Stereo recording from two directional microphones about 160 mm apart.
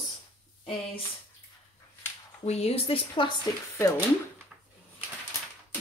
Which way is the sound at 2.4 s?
40° left (ahead or behind).